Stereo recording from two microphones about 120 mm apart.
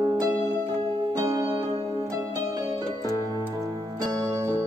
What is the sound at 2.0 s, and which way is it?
Music, 30° right (ahead or behind).